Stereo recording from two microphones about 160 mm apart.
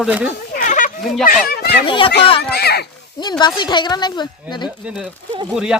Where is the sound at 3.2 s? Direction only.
25° left (ahead or behind).